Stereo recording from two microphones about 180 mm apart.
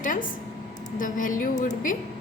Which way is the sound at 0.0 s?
45° left (ahead or behind).